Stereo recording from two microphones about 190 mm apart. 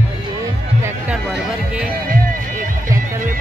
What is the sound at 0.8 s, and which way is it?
Music, 5° right (ahead or behind).